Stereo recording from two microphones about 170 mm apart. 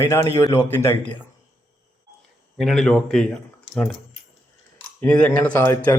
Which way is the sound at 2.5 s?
Centre (ahead or behind).